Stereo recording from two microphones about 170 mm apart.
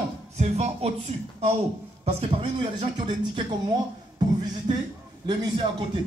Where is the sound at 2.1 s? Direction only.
35° right (ahead or behind).